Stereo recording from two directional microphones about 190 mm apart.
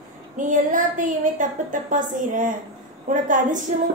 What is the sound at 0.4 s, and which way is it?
A woman's voice, 45° right (ahead or behind).